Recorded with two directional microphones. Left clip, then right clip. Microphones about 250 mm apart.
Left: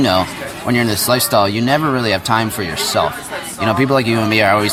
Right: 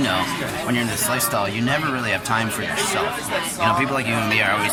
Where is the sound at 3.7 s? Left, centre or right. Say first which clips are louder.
Left 6 dB; centre.